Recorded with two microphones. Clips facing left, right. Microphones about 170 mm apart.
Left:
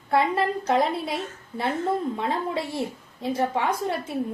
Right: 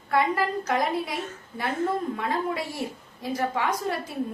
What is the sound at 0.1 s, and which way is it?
A woman's voice, 30° left (ahead or behind).